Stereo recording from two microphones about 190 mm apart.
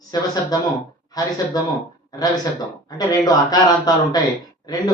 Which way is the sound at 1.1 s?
20° left (ahead or behind).